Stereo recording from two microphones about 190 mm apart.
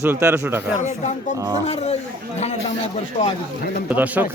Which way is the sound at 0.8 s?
40° left (ahead or behind).